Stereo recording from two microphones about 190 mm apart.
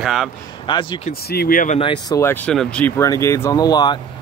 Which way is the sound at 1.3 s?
50° left (ahead or behind).